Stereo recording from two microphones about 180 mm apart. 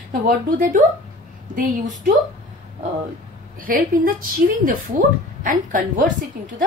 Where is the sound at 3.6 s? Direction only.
50° right (ahead or behind).